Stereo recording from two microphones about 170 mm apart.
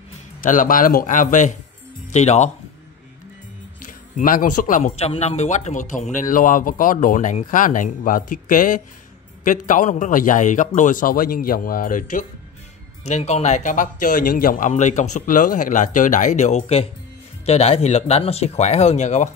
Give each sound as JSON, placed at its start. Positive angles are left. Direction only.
{"t": 0.4, "sound": "speech", "side_deg": 55}
{"t": 3.8, "sound": "speech", "side_deg": 55}
{"t": 13.0, "sound": "speech", "side_deg": 40}